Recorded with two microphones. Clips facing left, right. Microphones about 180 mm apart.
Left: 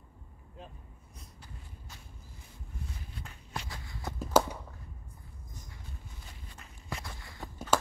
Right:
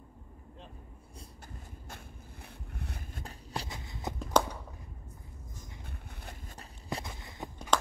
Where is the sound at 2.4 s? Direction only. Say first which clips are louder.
Right 2 dB; 65° right (ahead or behind).